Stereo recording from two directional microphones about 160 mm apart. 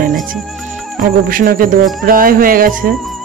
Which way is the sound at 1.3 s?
60° right (ahead or behind).